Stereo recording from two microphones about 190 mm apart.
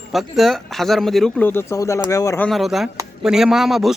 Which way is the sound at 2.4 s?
Centre (ahead or behind).